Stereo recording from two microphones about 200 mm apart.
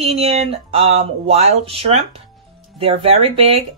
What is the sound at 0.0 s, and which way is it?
Speech, 30° right (ahead or behind).